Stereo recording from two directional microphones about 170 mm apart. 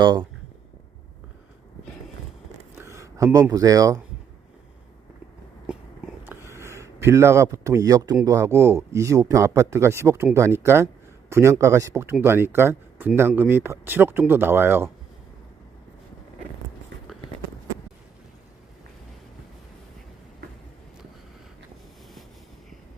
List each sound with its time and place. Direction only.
0.0 s speech: 25° right (ahead or behind)
2.7 s a sound: 15° right (ahead or behind)
3.5 s speech: 20° right (ahead or behind)
6.2 s speech: 15° right (ahead or behind)